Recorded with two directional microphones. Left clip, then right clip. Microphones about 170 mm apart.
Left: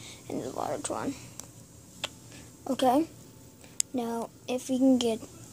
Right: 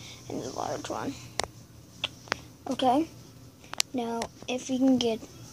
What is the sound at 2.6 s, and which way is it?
A woman's voice, 15° left (ahead or behind).